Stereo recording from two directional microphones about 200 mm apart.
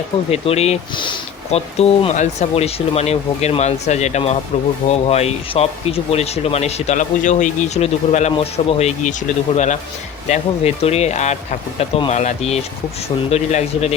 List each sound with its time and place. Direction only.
0.3 s speech: 30° left (ahead or behind)
10.2 s speech: 35° left (ahead or behind)